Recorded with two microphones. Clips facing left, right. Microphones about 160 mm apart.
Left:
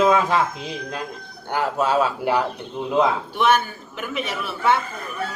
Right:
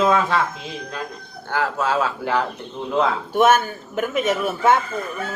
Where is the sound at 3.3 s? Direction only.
45° right (ahead or behind).